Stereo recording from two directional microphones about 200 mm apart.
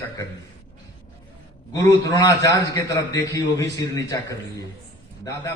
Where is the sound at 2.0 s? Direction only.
15° left (ahead or behind).